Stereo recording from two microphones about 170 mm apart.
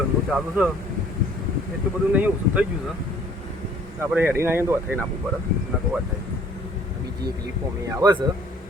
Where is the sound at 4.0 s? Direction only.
15° right (ahead or behind).